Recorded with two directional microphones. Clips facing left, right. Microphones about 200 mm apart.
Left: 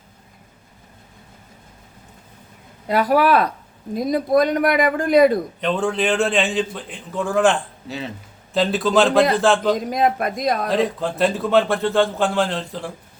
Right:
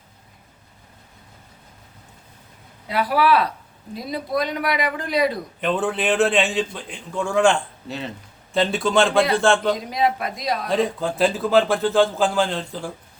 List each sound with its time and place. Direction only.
2.8 s speech: 45° left (ahead or behind)
5.5 s a man's voice: 5° right (ahead or behind)
9.7 s speech: 50° left (ahead or behind)
10.7 s a man's voice: centre (ahead or behind)